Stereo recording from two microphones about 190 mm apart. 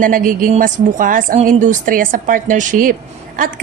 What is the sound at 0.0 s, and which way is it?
A woman's voice, 45° right (ahead or behind).